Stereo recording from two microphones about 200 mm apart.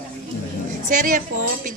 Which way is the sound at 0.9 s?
40° right (ahead or behind).